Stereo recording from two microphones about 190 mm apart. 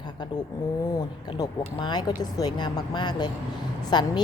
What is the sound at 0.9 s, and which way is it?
A woman's voice, 20° left (ahead or behind).